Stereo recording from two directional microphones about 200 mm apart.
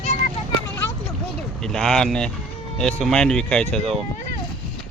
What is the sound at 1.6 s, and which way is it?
Speech, 5° left (ahead or behind).